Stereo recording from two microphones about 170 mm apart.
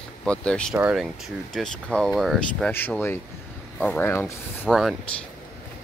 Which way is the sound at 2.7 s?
10° left (ahead or behind).